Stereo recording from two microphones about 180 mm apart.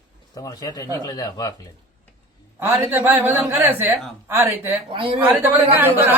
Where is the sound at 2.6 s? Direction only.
10° right (ahead or behind).